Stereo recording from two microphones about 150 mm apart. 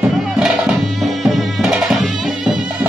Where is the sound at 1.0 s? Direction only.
Centre (ahead or behind).